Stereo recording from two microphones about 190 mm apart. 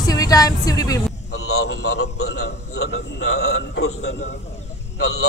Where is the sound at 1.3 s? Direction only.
90° left.